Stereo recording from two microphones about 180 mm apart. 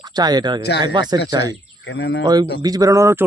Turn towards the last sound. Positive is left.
turn(degrees=-15)  # may be behind; listen again after turning